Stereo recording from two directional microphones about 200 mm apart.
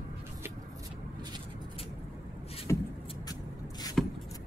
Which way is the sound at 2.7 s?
15° left (ahead or behind).